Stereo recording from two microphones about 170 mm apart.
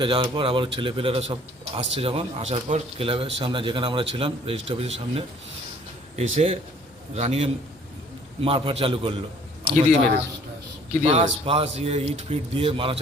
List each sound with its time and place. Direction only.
0.0 s a man's voice: 30° right (ahead or behind)
11.4 s a man's voice: 35° right (ahead or behind)